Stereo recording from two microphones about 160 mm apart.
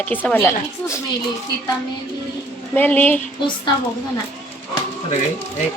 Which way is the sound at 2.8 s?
10° left (ahead or behind).